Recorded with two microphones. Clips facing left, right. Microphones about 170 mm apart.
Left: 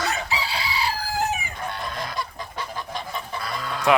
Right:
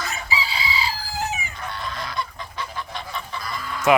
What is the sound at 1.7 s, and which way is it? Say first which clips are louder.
Goose: right 2 dB; 50° left (ahead or behind).